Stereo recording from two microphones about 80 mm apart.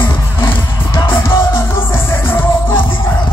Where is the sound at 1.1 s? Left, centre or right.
Left.